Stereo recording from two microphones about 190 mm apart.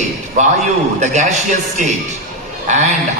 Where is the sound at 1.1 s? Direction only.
40° right (ahead or behind).